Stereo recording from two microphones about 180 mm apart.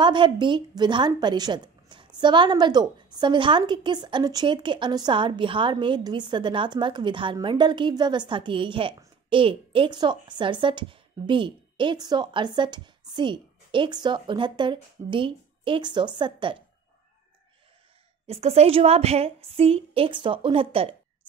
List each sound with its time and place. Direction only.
0.0 s a woman's voice: 25° right (ahead or behind)
18.2 s a woman's voice: 35° right (ahead or behind)